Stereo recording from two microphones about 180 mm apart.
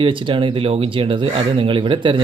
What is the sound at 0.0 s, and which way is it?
Speech, 30° right (ahead or behind).